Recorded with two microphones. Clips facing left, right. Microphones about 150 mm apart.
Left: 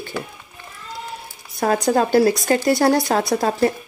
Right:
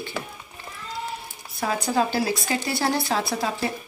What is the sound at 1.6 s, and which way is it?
Speech, 45° left (ahead or behind).